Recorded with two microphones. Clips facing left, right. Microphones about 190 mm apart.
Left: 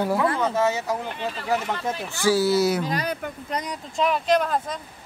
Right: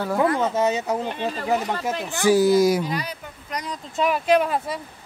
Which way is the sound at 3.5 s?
30° left (ahead or behind).